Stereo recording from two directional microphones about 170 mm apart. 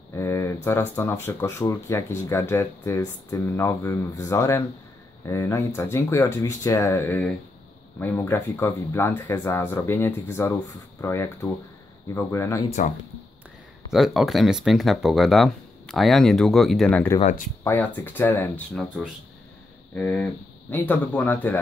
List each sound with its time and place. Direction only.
0.1 s speech: 15° left (ahead or behind)
12.6 s speech: 45° left (ahead or behind)
13.9 s speech: centre (ahead or behind)
17.2 s speech: 45° left (ahead or behind)
17.6 s speech: 10° left (ahead or behind)
20.0 s speech: 10° left (ahead or behind)